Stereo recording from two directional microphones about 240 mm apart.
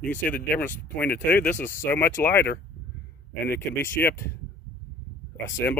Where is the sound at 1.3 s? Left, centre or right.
Centre.